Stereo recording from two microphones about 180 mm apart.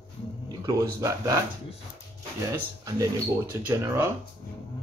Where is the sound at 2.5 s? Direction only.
15° right (ahead or behind).